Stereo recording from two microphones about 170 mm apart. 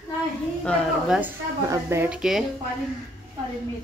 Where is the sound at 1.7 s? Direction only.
15° right (ahead or behind).